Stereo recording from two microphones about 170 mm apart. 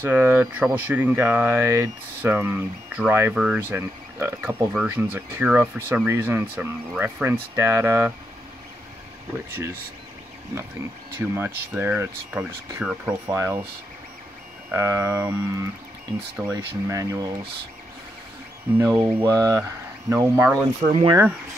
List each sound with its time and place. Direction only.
0.0 s speech: 10° right (ahead or behind)
11.1 s speech: 10° right (ahead or behind)
14.7 s speech: 15° right (ahead or behind)
18.8 s speech: 10° right (ahead or behind)
20.9 s speech: 30° right (ahead or behind)